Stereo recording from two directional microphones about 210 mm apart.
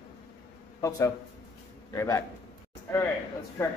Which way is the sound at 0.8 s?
15° left (ahead or behind).